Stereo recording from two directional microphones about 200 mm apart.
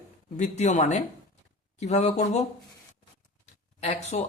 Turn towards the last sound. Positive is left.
turn(degrees=35)  # may be behind; listen again after turning